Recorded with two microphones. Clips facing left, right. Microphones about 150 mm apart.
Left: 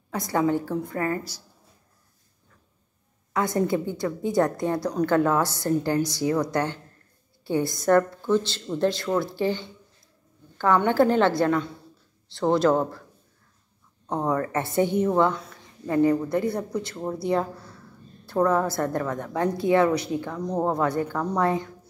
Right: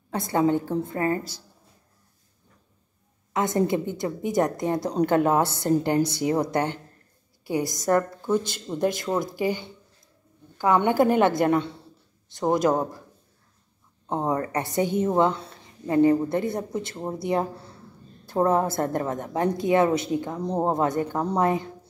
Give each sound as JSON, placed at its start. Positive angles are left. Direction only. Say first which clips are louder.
{"t": 0.1, "sound": "a woman's voice", "louder": "right 1 dB", "side_deg": -25}
{"t": 3.3, "sound": "a woman's voice", "louder": "right 1 dB", "side_deg": -20}
{"t": 14.0, "sound": "a woman's voice", "louder": "even", "side_deg": -20}